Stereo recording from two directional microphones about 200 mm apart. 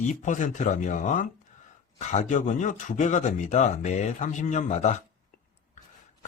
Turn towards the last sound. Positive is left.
turn(degrees=35)  # may be behind; listen again after turning